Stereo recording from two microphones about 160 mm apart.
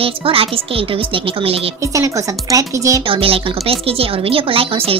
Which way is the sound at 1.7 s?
20° right (ahead or behind).